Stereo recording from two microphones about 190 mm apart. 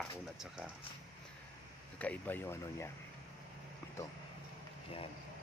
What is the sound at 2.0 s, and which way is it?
Speech, 10° left (ahead or behind).